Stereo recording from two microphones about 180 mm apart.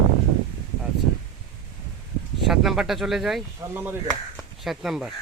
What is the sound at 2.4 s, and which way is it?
Speech, centre (ahead or behind).